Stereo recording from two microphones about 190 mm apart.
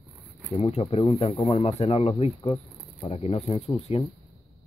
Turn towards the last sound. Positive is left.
turn(degrees=30)  # may be behind; listen again after turning